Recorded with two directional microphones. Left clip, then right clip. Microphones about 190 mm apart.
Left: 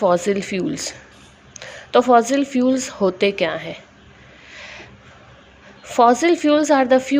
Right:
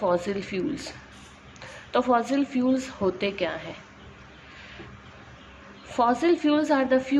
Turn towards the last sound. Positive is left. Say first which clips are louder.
# left 7 dB
turn(degrees=35)  # may be behind; listen again after turning